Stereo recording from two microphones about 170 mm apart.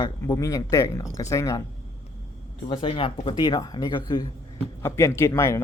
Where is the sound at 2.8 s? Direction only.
30° left (ahead or behind); by 5.6 s 15° left (ahead or behind).